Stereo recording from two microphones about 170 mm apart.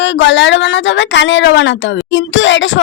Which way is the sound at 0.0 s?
90° left.